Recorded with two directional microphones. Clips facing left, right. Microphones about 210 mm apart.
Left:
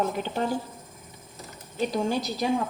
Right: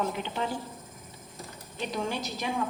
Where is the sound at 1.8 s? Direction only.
35° left (ahead or behind).